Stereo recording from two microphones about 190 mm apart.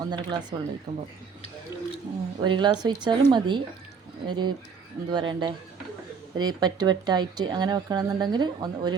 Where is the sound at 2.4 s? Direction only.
25° right (ahead or behind).